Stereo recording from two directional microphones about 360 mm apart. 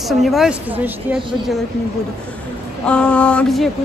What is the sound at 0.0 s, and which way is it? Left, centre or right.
Speech, centre.